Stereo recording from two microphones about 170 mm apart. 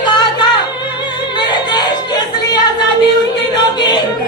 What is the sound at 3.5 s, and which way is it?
Music, 25° left (ahead or behind).